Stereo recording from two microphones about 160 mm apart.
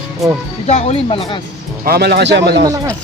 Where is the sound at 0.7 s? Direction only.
40° left (ahead or behind).